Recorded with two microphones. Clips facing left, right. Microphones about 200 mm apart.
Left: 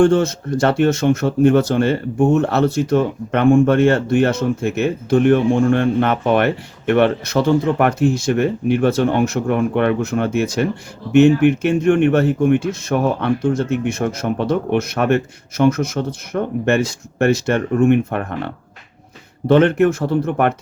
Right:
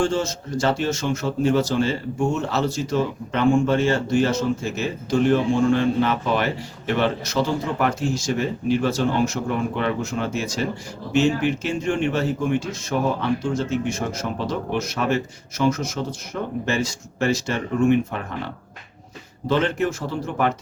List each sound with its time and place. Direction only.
0.0 s speech: 60° left (ahead or behind)